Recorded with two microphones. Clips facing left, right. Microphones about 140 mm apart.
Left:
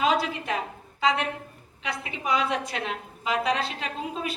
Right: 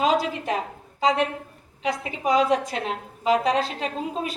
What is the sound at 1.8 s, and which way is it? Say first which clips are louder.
A woman's voice: right 6 dB; 40° right (ahead or behind).